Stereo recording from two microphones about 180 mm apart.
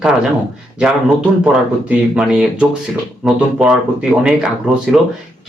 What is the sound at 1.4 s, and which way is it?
Speech, 5° right (ahead or behind).